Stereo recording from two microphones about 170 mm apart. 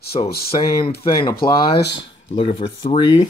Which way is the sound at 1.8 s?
90° left.